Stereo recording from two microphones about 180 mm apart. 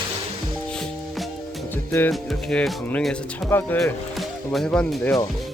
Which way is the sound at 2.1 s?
Centre (ahead or behind).